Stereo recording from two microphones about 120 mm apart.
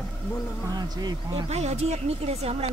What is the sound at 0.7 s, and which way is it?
Speech, 35° right (ahead or behind).